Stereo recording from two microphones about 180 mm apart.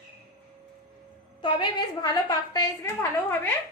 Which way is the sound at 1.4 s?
25° left (ahead or behind).